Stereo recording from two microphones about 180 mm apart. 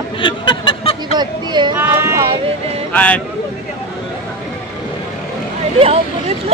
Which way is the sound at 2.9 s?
5° left (ahead or behind).